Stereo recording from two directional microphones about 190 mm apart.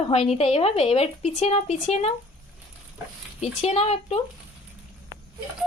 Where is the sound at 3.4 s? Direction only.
35° left (ahead or behind).